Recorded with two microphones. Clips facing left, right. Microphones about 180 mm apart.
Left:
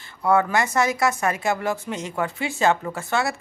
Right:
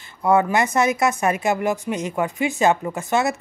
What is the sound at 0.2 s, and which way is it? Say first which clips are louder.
Speech: right 2 dB; 20° right (ahead or behind).